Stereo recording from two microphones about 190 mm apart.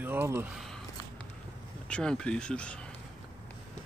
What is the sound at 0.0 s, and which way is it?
Speech, 10° right (ahead or behind).